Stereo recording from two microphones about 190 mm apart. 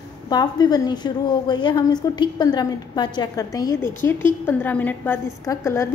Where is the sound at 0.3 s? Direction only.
20° left (ahead or behind).